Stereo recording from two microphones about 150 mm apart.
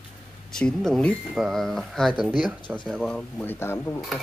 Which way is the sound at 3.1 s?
10° left (ahead or behind).